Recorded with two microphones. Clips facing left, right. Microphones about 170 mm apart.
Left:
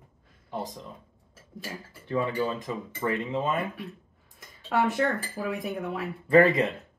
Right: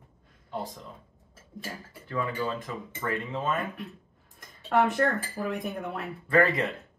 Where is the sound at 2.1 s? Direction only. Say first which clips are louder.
Left 3 dB; 25° left (ahead or behind).